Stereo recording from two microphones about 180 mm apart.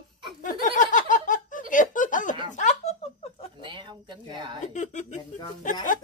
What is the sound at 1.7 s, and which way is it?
Speech, 45° left (ahead or behind).